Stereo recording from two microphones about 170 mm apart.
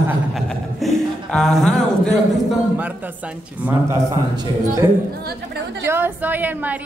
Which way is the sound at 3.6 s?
10° right (ahead or behind).